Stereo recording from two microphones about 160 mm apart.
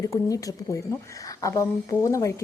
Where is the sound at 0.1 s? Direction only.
20° left (ahead or behind).